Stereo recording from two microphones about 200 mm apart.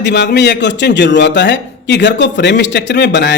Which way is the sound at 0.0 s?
60° left (ahead or behind).